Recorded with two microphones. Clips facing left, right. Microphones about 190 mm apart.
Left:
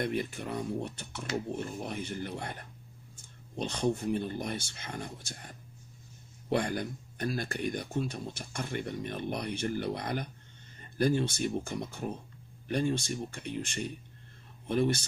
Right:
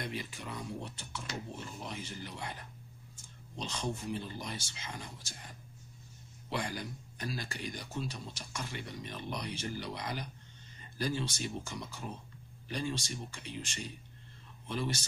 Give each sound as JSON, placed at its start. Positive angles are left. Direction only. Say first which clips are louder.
{"t": 0.0, "sound": "speech", "louder": "left 8 dB", "side_deg": 55}